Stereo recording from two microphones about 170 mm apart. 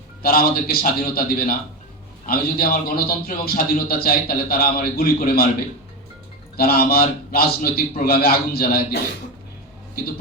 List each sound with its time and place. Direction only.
0.2 s a man's voice: 60° left (ahead or behind)
6.6 s a man's voice: 65° left (ahead or behind)